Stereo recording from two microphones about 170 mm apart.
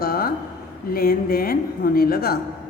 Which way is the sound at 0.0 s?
60° left (ahead or behind).